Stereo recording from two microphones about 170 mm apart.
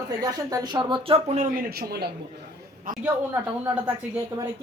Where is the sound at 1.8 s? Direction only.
65° right (ahead or behind).